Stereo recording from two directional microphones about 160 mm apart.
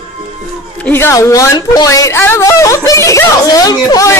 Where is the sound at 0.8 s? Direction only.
15° left (ahead or behind).